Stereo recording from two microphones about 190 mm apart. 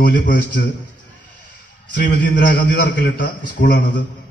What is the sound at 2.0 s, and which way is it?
A man's voice, 50° left (ahead or behind).